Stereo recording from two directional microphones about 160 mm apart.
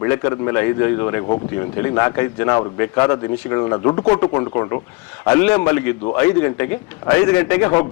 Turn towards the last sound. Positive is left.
turn(degrees=20)  # may be behind; listen again after turning